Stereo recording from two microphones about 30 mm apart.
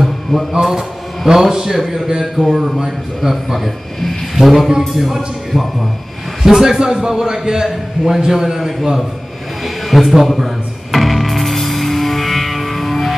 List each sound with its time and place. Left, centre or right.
0.0 s a sound: centre
0.7 s a man's voice: centre
4.4 s a man's voice: centre
6.4 s a man's voice: centre
9.8 s music: centre